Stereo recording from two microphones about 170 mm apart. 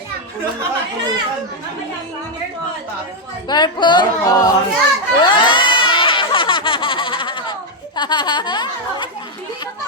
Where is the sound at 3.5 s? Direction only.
25° left (ahead or behind).